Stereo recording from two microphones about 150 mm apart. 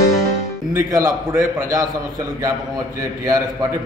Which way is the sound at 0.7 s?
25° right (ahead or behind).